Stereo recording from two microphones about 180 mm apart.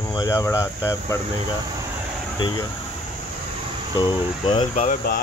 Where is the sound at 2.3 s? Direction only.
20° left (ahead or behind).